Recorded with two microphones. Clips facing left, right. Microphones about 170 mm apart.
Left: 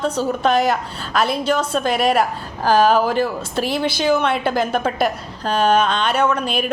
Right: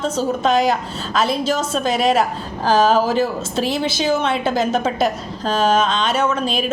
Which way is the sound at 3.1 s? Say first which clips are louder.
Right 1 dB; 55° left (ahead or behind).